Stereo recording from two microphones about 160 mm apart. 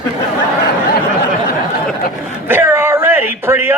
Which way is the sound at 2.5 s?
15° right (ahead or behind).